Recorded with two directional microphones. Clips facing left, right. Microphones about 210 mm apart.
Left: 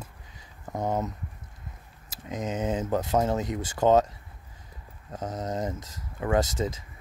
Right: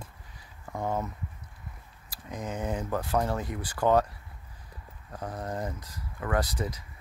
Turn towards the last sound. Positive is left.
turn(degrees=25)  # may be behind; listen again after turning